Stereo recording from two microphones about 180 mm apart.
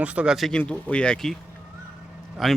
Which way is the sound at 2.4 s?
Centre (ahead or behind).